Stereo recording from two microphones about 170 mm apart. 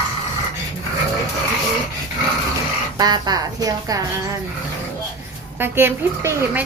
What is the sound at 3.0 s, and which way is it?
A woman's voice, 25° right (ahead or behind).